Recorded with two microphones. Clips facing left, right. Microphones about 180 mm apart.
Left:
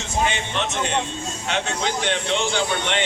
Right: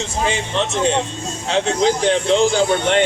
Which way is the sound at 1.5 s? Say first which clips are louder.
Right 9 dB; 35° right (ahead or behind).